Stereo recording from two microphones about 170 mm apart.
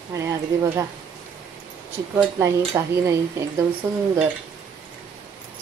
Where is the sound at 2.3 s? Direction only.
15° right (ahead or behind).